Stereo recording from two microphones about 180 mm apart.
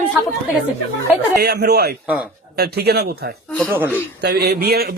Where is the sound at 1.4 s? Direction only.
65° right (ahead or behind).